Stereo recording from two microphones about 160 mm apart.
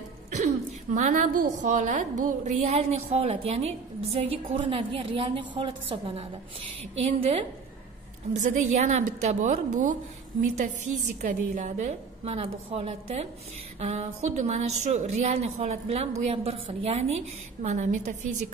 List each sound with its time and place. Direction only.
0.9 s a woman's voice: 50° right (ahead or behind)